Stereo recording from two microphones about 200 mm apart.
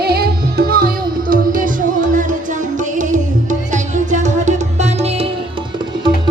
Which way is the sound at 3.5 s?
40° right (ahead or behind).